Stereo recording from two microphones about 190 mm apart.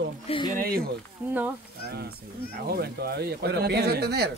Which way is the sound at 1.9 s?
55° right (ahead or behind).